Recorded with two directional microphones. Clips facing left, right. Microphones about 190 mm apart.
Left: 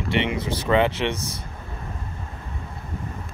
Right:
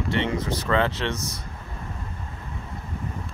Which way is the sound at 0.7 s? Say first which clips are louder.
Left 4 dB; 15° left (ahead or behind).